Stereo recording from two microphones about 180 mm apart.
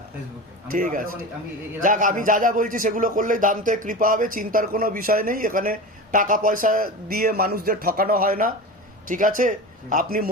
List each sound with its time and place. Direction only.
0.7 s a man's voice: 50° right (ahead or behind)